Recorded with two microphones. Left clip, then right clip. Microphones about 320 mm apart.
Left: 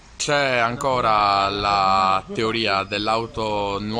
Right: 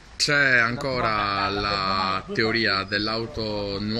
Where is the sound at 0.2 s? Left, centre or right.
Centre.